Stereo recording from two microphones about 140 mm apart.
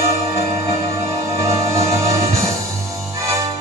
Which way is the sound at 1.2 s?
25° right (ahead or behind).